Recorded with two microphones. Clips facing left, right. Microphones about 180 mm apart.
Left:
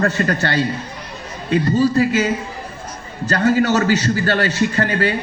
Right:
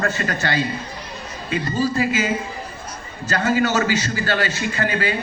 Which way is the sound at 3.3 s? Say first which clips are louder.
Left 4 dB; 45° left (ahead or behind).